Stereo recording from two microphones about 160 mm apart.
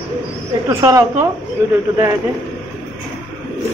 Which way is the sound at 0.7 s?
20° right (ahead or behind).